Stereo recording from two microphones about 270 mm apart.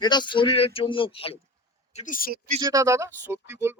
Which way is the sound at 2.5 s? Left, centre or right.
Centre.